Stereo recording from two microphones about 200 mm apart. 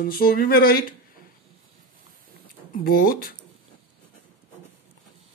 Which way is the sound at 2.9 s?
50° left (ahead or behind).